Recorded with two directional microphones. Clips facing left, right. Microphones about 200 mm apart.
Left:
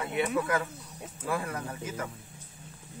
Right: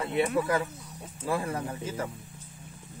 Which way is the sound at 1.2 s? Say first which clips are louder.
Right 3 dB; 25° right (ahead or behind).